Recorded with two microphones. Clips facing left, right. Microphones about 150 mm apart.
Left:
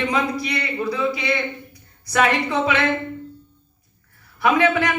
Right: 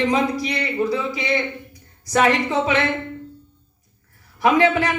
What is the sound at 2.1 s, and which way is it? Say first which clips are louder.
Speech: right 2 dB; 20° right (ahead or behind).